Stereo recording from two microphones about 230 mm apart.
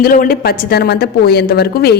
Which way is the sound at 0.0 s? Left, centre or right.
Left.